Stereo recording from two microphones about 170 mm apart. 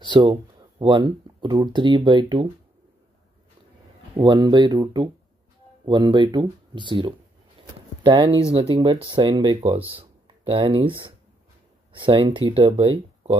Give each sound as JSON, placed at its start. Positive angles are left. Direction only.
{"t": 0.0, "sound": "speech", "side_deg": -25}
{"t": 4.2, "sound": "speech", "side_deg": -30}